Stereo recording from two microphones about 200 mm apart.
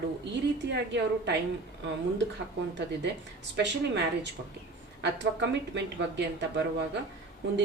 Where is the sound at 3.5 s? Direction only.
60° right (ahead or behind).